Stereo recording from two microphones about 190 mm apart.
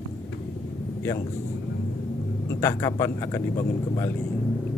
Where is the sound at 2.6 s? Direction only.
15° left (ahead or behind).